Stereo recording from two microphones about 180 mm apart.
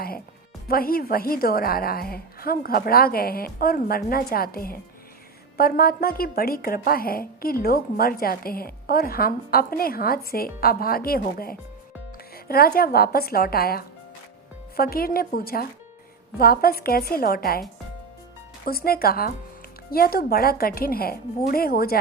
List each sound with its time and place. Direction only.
0.7 s a woman's voice: 55° left (ahead or behind)
18.6 s a woman's voice: 55° left (ahead or behind)